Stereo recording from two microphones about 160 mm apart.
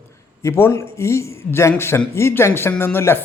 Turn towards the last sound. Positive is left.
turn(degrees=15)  # may be behind; listen again after turning